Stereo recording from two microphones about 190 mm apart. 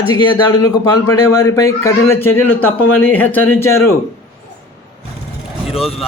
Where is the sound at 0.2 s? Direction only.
20° left (ahead or behind).